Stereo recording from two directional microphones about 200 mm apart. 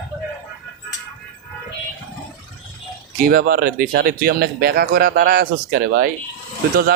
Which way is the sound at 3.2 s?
50° right (ahead or behind).